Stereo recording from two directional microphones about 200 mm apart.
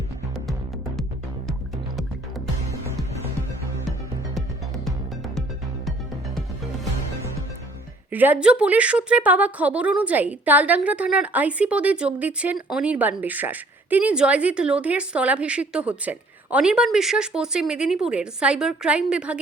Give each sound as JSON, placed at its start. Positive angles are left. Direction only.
{"t": 8.1, "sound": "a woman's voice", "side_deg": -10}